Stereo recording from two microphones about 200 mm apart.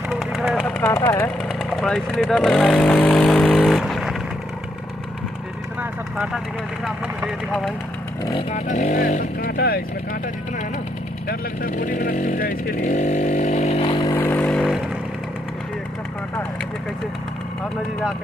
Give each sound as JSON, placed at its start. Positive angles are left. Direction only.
{"t": 0.1, "sound": "vehicle", "side_deg": 0}
{"t": 1.4, "sound": "speech", "side_deg": 0}
{"t": 5.8, "sound": "vehicle", "side_deg": -5}
{"t": 7.2, "sound": "speech", "side_deg": 0}
{"t": 8.3, "sound": "speech", "side_deg": 30}
{"t": 11.2, "sound": "speech", "side_deg": 45}
{"t": 14.0, "sound": "vehicle", "side_deg": 10}